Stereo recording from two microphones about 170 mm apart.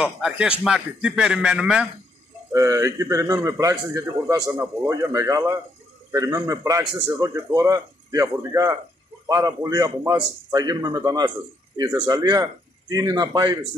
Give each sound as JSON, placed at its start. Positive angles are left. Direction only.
{"t": 0.0, "sound": "a man's voice", "side_deg": -5}
{"t": 2.5, "sound": "a man's voice", "side_deg": -20}